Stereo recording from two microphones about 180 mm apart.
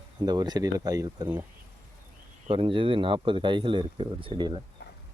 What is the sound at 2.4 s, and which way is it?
Speech, 30° right (ahead or behind).